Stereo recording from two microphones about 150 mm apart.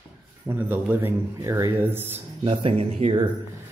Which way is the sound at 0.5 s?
15° right (ahead or behind).